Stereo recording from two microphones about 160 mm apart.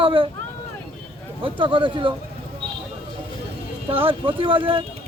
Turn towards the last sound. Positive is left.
turn(degrees=-35)  # may be behind; listen again after turning